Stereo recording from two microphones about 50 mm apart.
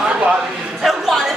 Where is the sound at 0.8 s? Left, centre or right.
Centre.